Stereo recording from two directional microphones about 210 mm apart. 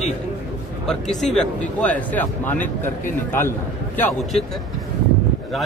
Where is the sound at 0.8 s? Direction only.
Centre (ahead or behind).